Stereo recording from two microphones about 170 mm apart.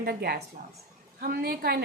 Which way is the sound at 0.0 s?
65° right (ahead or behind).